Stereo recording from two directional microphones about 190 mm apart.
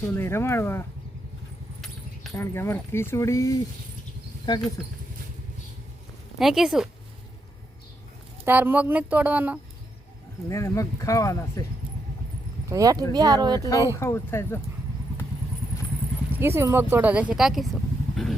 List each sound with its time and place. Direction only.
0.1 s speech: 10° left (ahead or behind)
2.3 s speech: 15° left (ahead or behind)
6.4 s speech: centre (ahead or behind)
8.4 s speech: 10° right (ahead or behind)
10.5 s speech: 15° left (ahead or behind)
12.6 s speech: 20° right (ahead or behind)
13.6 s speech: 15° left (ahead or behind)
16.3 s speech: 15° right (ahead or behind)